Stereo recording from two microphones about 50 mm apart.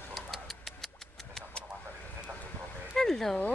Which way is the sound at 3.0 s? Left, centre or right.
Centre.